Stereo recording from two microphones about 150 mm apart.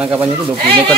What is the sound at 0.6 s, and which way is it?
Speech, 35° right (ahead or behind).